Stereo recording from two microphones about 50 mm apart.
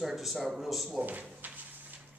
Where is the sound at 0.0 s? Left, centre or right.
Centre.